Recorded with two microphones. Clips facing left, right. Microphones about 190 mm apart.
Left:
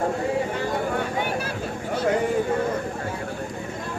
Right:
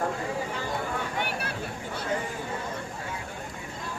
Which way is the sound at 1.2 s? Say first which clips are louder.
Left 5 dB; 65° right (ahead or behind).